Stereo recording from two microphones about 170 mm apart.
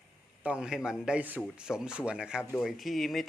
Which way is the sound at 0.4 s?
5° right (ahead or behind).